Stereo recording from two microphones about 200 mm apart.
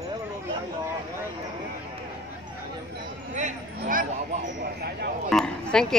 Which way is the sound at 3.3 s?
40° right (ahead or behind).